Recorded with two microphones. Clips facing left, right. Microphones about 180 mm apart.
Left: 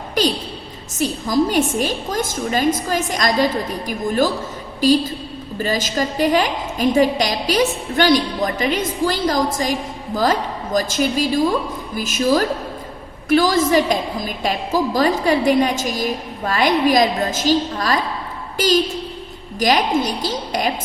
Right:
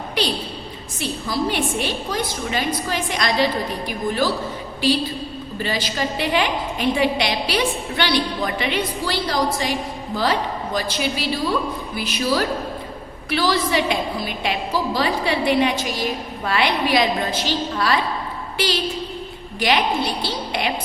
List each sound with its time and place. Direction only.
0.2 s a woman's voice: 45° left (ahead or behind)